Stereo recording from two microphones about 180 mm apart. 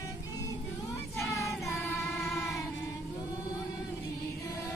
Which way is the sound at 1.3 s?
15° left (ahead or behind).